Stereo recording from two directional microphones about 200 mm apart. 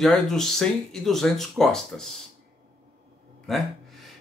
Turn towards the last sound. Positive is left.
turn(degrees=0)  # may be behind; listen again after turning